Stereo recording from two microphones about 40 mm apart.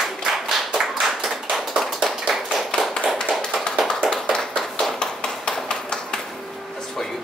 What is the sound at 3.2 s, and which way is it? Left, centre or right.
Tap, centre.